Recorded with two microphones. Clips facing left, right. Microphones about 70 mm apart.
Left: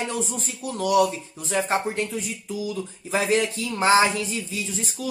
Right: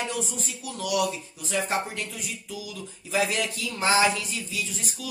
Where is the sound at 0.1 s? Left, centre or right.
Left.